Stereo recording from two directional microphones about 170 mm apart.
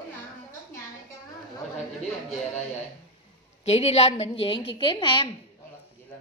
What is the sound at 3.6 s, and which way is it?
A woman's voice, 40° left (ahead or behind).